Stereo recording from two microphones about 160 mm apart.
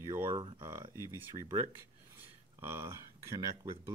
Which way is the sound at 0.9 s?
20° left (ahead or behind).